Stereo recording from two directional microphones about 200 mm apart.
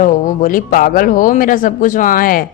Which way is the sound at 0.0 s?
45° left (ahead or behind).